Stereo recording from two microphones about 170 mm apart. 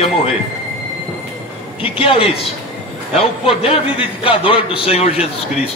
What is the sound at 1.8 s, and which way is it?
A man's voice, 30° left (ahead or behind).